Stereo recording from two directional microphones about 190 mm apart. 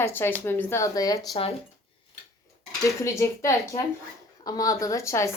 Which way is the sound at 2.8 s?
15° left (ahead or behind).